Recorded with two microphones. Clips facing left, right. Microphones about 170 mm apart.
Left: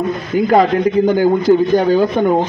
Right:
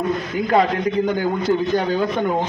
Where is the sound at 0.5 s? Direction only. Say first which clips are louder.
Left 5 dB; 35° left (ahead or behind).